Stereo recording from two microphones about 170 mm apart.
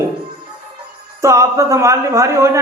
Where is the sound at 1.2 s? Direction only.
15° right (ahead or behind).